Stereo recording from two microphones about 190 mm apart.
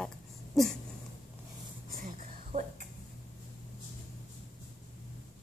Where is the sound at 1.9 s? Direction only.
45° right (ahead or behind).